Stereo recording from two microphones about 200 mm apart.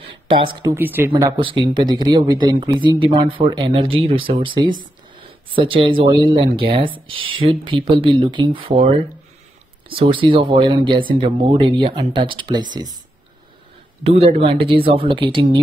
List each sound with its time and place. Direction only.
0.3 s speech: 25° right (ahead or behind)
1.4 s speech: 25° right (ahead or behind)
14.0 s speech: 30° right (ahead or behind)